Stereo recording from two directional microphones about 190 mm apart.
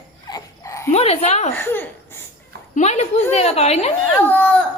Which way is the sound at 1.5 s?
10° left (ahead or behind).